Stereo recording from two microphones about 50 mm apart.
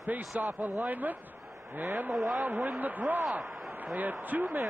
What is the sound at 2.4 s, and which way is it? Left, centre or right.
Speech, right.